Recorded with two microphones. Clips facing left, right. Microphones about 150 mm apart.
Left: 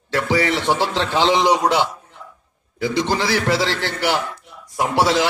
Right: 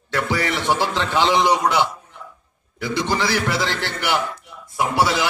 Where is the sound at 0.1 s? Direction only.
30° left (ahead or behind).